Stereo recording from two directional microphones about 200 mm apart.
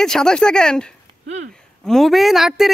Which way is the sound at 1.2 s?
35° right (ahead or behind).